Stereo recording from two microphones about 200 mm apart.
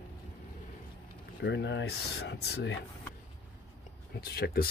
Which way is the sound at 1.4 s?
60° left (ahead or behind).